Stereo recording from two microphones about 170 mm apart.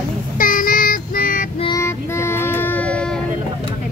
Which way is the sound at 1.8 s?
15° left (ahead or behind).